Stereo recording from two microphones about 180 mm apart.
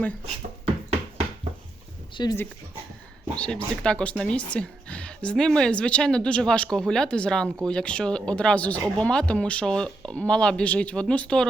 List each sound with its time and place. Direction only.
2.2 s speech: 20° left (ahead or behind)
3.3 s speech: 5° left (ahead or behind)